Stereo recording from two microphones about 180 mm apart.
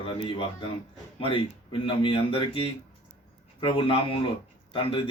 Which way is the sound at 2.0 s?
30° left (ahead or behind).